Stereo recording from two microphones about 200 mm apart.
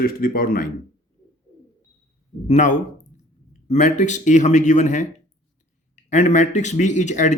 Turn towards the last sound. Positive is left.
turn(degrees=35)  # may be behind; listen again after turning